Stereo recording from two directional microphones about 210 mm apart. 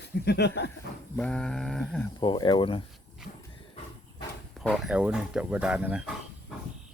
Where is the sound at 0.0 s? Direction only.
55° left (ahead or behind).